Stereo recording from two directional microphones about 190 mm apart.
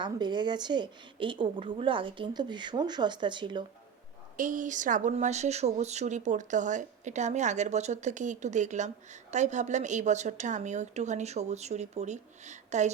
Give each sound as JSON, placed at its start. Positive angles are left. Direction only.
{"t": 0.0, "sound": "a woman's voice", "side_deg": -25}
{"t": 4.4, "sound": "speech", "side_deg": -40}